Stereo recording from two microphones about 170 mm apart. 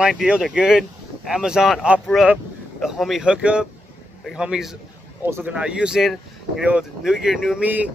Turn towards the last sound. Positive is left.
turn(degrees=-10)  # may be behind; listen again after turning